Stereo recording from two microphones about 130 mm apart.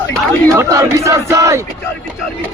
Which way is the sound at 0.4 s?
25° right (ahead or behind).